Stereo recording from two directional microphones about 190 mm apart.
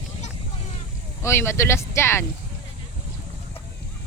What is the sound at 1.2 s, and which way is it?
Speech, 15° left (ahead or behind).